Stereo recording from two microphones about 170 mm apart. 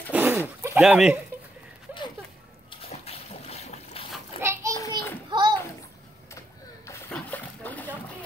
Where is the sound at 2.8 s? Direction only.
35° left (ahead or behind).